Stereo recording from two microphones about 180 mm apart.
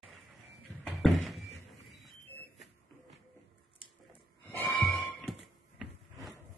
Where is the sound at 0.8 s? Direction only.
Centre (ahead or behind).